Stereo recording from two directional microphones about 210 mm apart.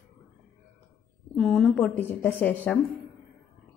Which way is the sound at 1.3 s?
5° left (ahead or behind).